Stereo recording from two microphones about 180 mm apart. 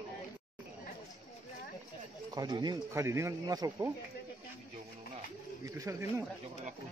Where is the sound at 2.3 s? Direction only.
25° right (ahead or behind).